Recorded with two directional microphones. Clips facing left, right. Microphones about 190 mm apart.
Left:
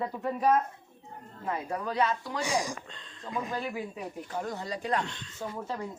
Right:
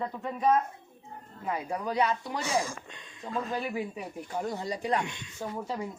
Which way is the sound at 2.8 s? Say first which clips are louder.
Right 1 dB; 15° right (ahead or behind).